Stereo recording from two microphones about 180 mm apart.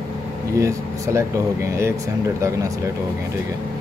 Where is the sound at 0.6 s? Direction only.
15° right (ahead or behind).